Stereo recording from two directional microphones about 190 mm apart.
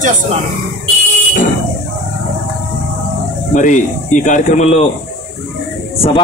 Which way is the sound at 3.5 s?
40° left (ahead or behind).